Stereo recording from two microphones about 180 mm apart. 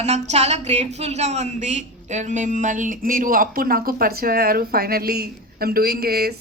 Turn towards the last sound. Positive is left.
turn(degrees=-60)  # may be behind; listen again after turning